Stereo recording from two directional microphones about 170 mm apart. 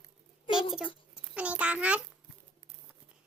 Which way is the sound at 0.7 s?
5° right (ahead or behind).